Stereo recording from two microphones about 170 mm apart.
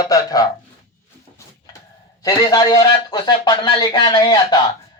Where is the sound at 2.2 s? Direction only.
25° left (ahead or behind).